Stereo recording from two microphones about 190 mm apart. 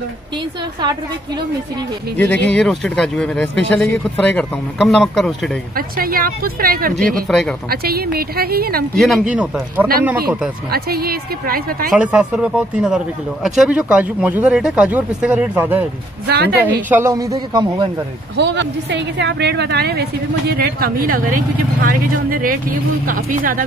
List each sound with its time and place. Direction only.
2.1 s speech: 10° left (ahead or behind)
5.8 s speech: 50° right (ahead or behind)
7.2 s speech: centre (ahead or behind)
7.7 s speech: 55° right (ahead or behind)
8.9 s speech: centre (ahead or behind)
10.7 s speech: 55° right (ahead or behind)
11.9 s speech: 5° right (ahead or behind)
16.3 s a woman's voice: 60° right (ahead or behind)
16.9 s a man's voice: 15° right (ahead or behind)
18.3 s speech: 65° right (ahead or behind); by 23.6 s 45° right (ahead or behind)